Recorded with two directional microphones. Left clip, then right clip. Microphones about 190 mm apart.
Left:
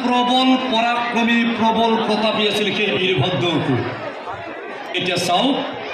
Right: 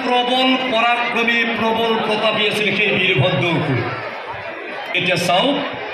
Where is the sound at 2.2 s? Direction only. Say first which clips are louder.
Right 1 dB; 55° left (ahead or behind).